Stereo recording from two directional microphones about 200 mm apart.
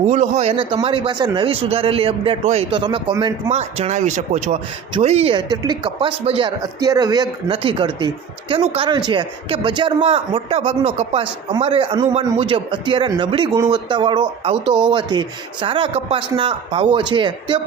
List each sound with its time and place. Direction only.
0.1 s a man's voice: 35° right (ahead or behind)